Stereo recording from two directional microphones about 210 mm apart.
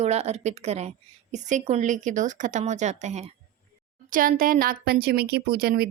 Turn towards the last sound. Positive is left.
turn(degrees=-45)  # may be behind; listen again after turning